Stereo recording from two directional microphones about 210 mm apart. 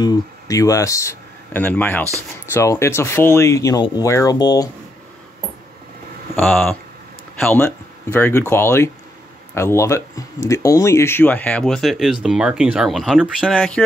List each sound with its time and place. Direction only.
0.0 s speech: 15° left (ahead or behind)
6.3 s speech: 10° left (ahead or behind)